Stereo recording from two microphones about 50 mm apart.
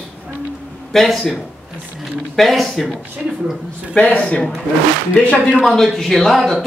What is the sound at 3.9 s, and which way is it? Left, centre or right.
Speech, left.